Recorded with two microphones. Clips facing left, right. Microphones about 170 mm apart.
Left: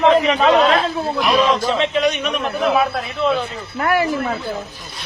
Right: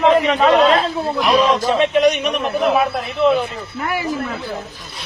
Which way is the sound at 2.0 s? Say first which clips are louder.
Right 4 dB; 35° right (ahead or behind).